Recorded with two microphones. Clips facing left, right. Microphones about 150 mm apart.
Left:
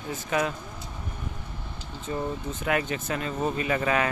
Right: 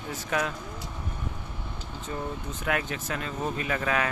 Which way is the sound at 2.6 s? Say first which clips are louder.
Left 2 dB; centre (ahead or behind).